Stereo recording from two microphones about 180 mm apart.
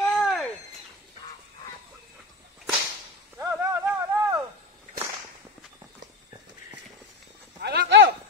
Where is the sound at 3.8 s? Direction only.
15° right (ahead or behind).